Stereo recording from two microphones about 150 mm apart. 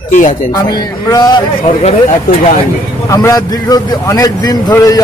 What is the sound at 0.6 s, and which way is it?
Speech, 25° left (ahead or behind).